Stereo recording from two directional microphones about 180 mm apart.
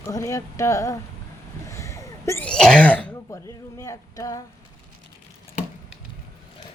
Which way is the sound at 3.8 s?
20° left (ahead or behind).